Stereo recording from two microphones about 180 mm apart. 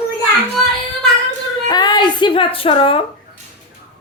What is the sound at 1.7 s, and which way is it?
Speech, 25° left (ahead or behind).